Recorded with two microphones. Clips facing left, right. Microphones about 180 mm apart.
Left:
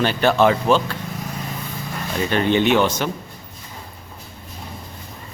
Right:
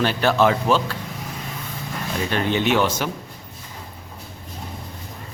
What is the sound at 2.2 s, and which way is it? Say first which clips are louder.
Speech: left 4 dB; centre (ahead or behind).